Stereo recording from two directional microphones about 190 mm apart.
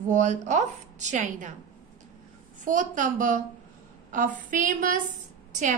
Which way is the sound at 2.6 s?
45° right (ahead or behind).